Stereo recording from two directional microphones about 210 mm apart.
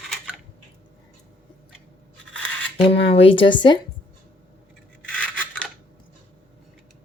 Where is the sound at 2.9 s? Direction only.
25° left (ahead or behind).